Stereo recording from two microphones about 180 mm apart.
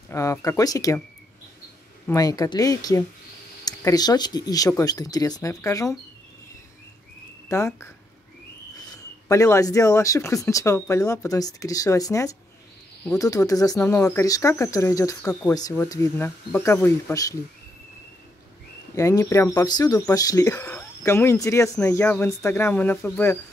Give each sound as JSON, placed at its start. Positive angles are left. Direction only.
{"t": 0.1, "sound": "speech", "side_deg": 15}
{"t": 2.0, "sound": "speech", "side_deg": 20}
{"t": 7.4, "sound": "speech", "side_deg": 15}
{"t": 8.9, "sound": "speech", "side_deg": 15}
{"t": 18.9, "sound": "speech", "side_deg": 15}